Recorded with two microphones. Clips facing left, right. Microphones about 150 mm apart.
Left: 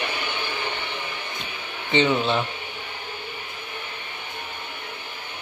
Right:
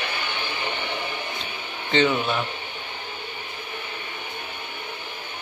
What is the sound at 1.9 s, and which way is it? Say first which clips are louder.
Speech: left 1 dB; 20° left (ahead or behind).